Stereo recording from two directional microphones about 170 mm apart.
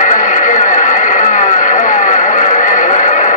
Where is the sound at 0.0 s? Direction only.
50° left (ahead or behind).